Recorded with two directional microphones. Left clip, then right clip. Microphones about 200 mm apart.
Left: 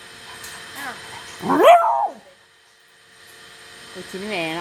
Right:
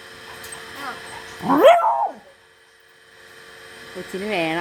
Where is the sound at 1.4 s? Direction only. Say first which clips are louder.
Left 1 dB; 5° left (ahead or behind).